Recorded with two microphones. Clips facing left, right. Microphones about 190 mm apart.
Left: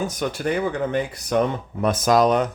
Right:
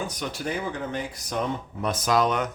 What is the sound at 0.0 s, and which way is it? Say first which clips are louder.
Speech: left 6 dB; 55° left (ahead or behind).